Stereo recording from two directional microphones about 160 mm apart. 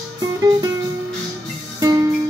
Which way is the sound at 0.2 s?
25° right (ahead or behind).